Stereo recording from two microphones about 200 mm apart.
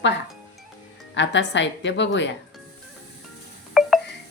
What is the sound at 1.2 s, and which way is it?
Speech, 65° left (ahead or behind).